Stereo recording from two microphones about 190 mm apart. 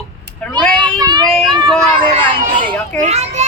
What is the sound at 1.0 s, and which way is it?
Speech, 20° right (ahead or behind).